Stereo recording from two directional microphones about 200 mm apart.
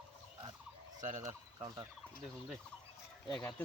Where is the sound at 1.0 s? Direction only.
35° right (ahead or behind).